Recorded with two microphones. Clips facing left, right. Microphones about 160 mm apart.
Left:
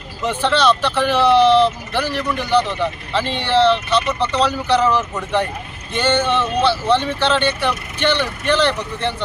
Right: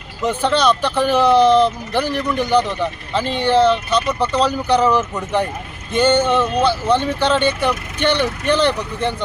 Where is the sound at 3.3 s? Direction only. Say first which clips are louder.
Right 5 dB; 45° right (ahead or behind).